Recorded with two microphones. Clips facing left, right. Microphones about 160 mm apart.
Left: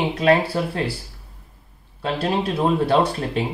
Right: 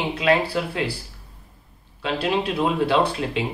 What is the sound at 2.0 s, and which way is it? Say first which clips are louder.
Speech: left 1 dB; 40° left (ahead or behind).